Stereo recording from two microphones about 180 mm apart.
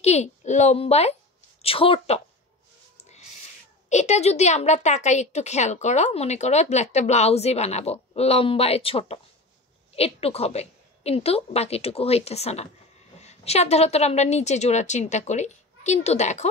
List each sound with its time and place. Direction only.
0.0 s a woman's voice: 40° left (ahead or behind)
3.9 s a woman's voice: 40° left (ahead or behind)